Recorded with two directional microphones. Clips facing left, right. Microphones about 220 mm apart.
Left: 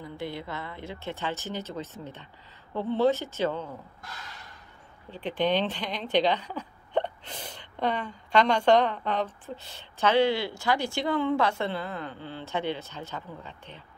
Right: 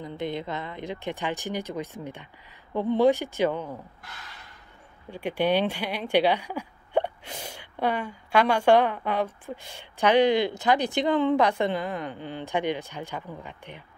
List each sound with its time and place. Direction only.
0.0 s speech: 20° right (ahead or behind)
5.1 s speech: 10° right (ahead or behind)